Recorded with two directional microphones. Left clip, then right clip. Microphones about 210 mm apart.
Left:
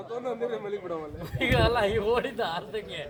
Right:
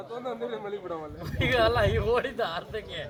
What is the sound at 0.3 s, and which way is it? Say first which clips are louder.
A man's voice: left 2 dB; 50° left (ahead or behind).